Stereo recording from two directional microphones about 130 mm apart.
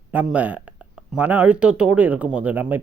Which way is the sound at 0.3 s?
10° right (ahead or behind).